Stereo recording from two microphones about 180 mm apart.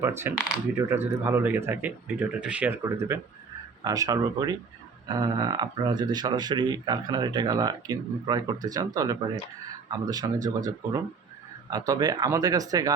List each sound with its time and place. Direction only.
0.0 s speech: 15° right (ahead or behind)